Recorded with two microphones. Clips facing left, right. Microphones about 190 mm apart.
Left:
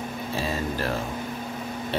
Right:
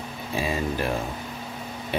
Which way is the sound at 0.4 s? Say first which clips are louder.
Right 3 dB; 15° right (ahead or behind).